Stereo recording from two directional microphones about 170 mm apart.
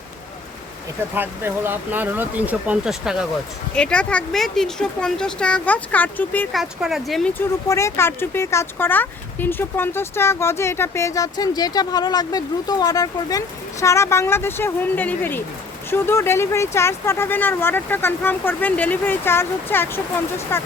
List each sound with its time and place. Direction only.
1.1 s speech: 10° right (ahead or behind); by 6.5 s 10° left (ahead or behind)
6.5 s speech: centre (ahead or behind)
7.3 s speech: 15° left (ahead or behind)